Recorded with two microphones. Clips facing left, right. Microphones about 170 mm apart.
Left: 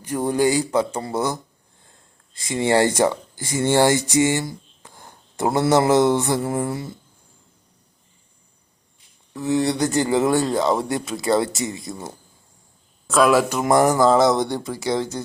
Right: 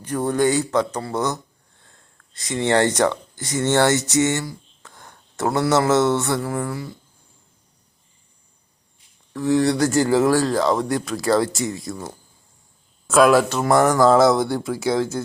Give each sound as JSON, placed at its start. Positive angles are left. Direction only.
{"t": 0.0, "sound": "speech", "side_deg": 10}
{"t": 4.4, "sound": "a sound", "side_deg": 25}
{"t": 5.4, "sound": "speech", "side_deg": 20}
{"t": 9.3, "sound": "speech", "side_deg": 5}
{"t": 13.1, "sound": "speech", "side_deg": 0}
{"t": 13.5, "sound": "speech", "side_deg": 15}
{"t": 14.0, "sound": "speech", "side_deg": 0}